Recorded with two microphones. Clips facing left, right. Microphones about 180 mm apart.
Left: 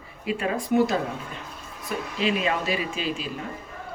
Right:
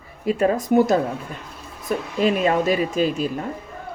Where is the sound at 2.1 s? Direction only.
45° right (ahead or behind).